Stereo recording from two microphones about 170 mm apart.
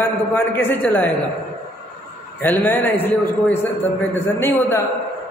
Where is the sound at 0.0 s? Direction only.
10° left (ahead or behind).